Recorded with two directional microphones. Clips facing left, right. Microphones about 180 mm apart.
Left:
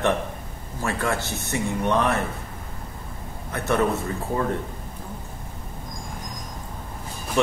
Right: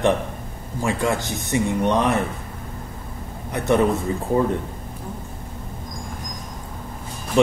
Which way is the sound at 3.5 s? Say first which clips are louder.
Right 4 dB; 15° right (ahead or behind).